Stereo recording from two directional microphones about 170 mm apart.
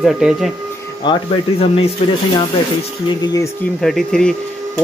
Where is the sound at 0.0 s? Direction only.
5° right (ahead or behind).